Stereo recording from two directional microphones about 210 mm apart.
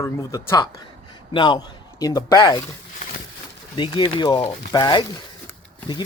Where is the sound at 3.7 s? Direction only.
20° left (ahead or behind).